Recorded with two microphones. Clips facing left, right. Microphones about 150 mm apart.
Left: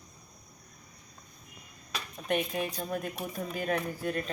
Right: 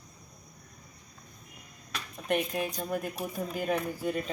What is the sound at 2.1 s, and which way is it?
Speech, centre (ahead or behind).